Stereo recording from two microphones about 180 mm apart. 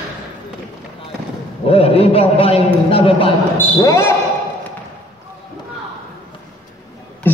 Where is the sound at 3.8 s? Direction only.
15° left (ahead or behind).